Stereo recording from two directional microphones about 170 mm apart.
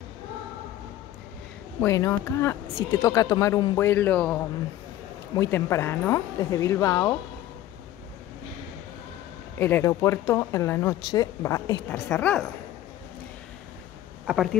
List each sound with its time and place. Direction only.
1.8 s a woman's voice: 15° left (ahead or behind)
9.6 s speech: 10° left (ahead or behind)
11.0 s a woman's voice: 30° left (ahead or behind); by 12.4 s 10° left (ahead or behind)
14.2 s speech: 5° right (ahead or behind)